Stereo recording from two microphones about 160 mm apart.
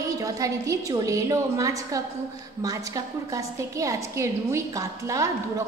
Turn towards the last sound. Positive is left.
turn(degrees=-20)  # may be behind; listen again after turning